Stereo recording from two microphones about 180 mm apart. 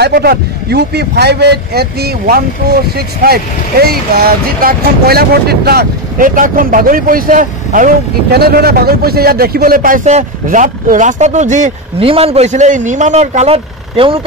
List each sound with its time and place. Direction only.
0.0 s a man's voice: 60° right (ahead or behind); by 14.2 s 30° right (ahead or behind)